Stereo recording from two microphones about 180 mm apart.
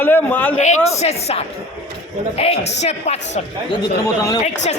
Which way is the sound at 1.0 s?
35° left (ahead or behind).